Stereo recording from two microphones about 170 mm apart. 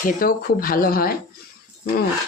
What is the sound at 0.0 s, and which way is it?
Speech, 55° left (ahead or behind).